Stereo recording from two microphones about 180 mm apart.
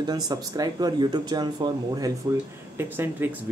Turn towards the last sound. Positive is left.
turn(degrees=-10)  # may be behind; listen again after turning